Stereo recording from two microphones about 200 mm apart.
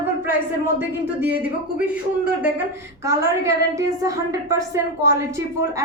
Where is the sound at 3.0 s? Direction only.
15° right (ahead or behind).